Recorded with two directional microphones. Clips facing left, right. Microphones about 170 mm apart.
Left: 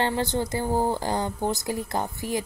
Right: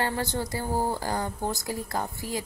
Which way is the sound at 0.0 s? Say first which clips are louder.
Left 4 dB; 20° left (ahead or behind).